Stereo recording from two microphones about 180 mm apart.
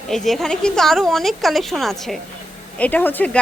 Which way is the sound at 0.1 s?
Centre (ahead or behind).